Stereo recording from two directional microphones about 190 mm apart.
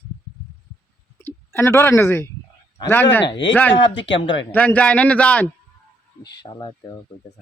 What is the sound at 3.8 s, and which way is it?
Speech, 75° left (ahead or behind).